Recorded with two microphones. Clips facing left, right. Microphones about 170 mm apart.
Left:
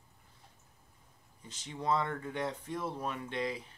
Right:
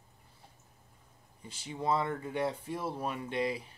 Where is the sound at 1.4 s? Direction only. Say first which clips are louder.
Right 1 dB; 10° right (ahead or behind).